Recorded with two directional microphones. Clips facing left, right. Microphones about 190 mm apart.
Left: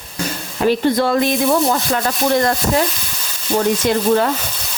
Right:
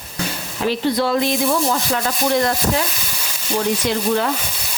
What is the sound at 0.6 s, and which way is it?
Speech, 50° left (ahead or behind).